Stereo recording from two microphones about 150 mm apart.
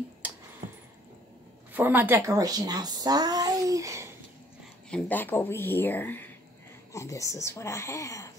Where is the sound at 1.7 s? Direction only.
10° right (ahead or behind).